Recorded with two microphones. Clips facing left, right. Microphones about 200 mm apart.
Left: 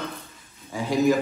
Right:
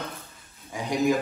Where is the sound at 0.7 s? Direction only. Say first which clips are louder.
Left 3 dB; 15° right (ahead or behind).